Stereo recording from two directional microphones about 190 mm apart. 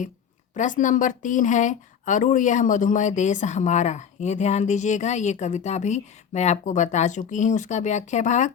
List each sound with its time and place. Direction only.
0.5 s speech: 40° left (ahead or behind)